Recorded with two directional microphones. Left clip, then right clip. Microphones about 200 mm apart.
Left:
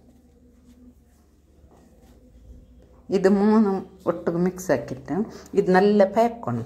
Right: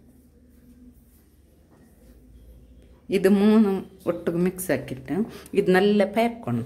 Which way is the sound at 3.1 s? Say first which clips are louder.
Left 1 dB; 25° right (ahead or behind).